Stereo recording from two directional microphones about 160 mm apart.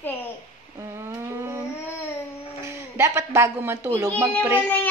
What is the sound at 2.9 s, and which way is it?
Speech, 15° right (ahead or behind).